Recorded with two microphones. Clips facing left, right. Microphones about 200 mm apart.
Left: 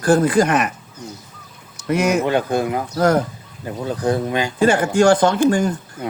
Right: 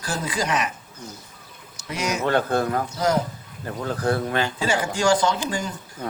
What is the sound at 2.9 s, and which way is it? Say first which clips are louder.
Speech: left 7 dB; 55° left (ahead or behind).